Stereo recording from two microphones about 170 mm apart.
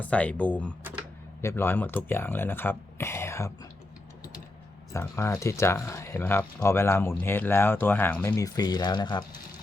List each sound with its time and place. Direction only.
0.0 s speech: 5° left (ahead or behind)
4.9 s speech: 15° left (ahead or behind)
8.3 s speech: 20° left (ahead or behind)